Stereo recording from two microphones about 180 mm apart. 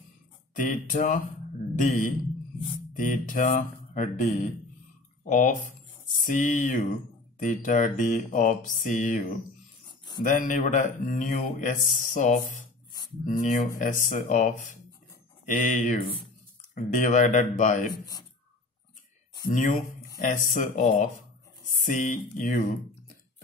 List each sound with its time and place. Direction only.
0.6 s speech: 45° left (ahead or behind)
10.2 s speech: 45° left (ahead or behind)
19.4 s speech: 50° left (ahead or behind)